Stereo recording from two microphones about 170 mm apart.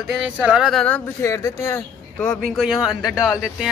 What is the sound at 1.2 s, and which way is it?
Speech, 20° left (ahead or behind).